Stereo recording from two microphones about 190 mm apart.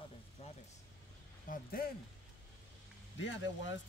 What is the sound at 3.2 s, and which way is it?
Speech, 80° left.